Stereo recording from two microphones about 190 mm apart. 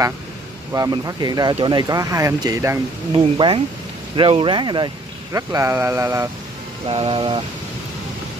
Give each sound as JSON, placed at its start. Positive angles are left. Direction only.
{"t": 0.7, "sound": "speech", "side_deg": -20}
{"t": 3.3, "sound": "speech", "side_deg": -25}
{"t": 6.9, "sound": "speech", "side_deg": -30}